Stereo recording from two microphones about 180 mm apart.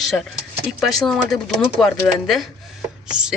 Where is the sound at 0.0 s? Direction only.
Centre (ahead or behind).